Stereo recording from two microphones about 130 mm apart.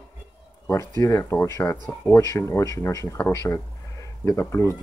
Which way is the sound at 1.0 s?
20° left (ahead or behind).